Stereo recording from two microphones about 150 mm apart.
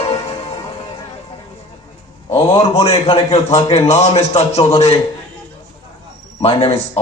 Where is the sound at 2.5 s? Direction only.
40° left (ahead or behind).